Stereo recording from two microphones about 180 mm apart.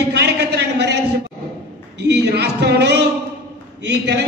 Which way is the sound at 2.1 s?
65° right (ahead or behind).